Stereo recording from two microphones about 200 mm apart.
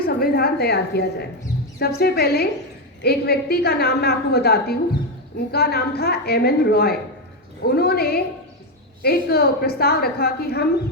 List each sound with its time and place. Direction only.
0.0 s a woman's voice: 50° left (ahead or behind)